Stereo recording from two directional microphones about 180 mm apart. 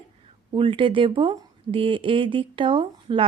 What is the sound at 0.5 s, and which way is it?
Speech, 30° right (ahead or behind).